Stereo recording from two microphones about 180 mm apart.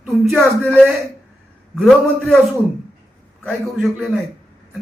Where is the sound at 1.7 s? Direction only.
Centre (ahead or behind).